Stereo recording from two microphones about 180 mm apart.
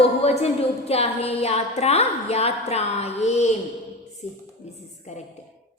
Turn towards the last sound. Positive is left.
turn(degrees=40)  # may be behind; listen again after turning